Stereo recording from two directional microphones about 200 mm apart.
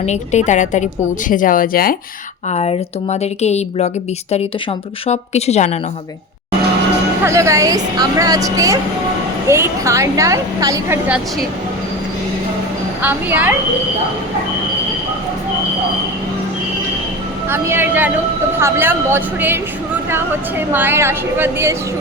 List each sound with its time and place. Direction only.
0.0 s speech: 35° left (ahead or behind)
2.5 s speech: 30° left (ahead or behind)
7.3 s a woman's voice: 15° right (ahead or behind)
13.0 s a woman's voice: 10° right (ahead or behind)
17.5 s a woman's voice: 10° right (ahead or behind)